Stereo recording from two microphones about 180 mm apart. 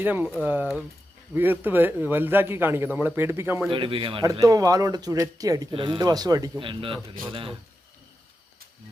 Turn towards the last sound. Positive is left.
turn(degrees=-30)  # may be behind; listen again after turning